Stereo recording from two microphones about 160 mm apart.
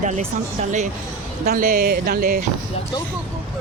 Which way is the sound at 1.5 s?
60° right (ahead or behind).